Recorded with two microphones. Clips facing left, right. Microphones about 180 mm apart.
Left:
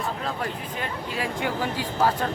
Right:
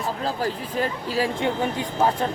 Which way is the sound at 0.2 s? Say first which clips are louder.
Right 4 dB; 35° right (ahead or behind).